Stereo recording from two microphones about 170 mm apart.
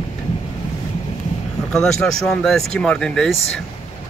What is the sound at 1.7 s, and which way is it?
Speech, centre (ahead or behind).